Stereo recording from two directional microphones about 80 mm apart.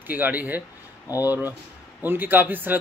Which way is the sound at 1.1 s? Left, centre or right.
Left.